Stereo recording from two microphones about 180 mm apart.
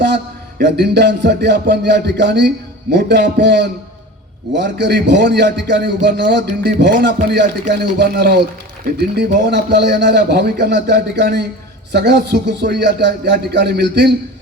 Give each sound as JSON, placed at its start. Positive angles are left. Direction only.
{"t": 0.6, "sound": "a man's voice", "side_deg": -70}